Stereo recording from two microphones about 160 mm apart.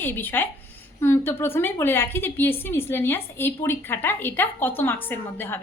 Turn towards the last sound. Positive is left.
turn(degrees=10)  # may be behind; listen again after turning